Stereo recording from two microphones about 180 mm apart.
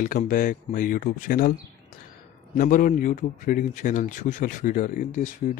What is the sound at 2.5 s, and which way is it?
A man's voice, 50° left (ahead or behind).